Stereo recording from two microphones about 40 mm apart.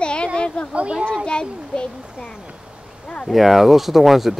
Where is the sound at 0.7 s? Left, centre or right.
Right.